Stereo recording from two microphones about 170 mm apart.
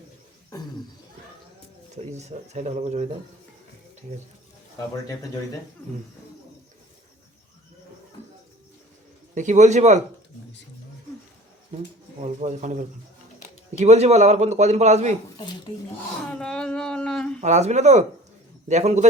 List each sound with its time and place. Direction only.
2.1 s a man's voice: 40° right (ahead or behind)
9.3 s speech: 45° right (ahead or behind)
12.2 s a man's voice: 45° right (ahead or behind)
15.4 s speech: 25° left (ahead or behind)
16.3 s a sound: 5° left (ahead or behind)
17.4 s speech: 45° right (ahead or behind)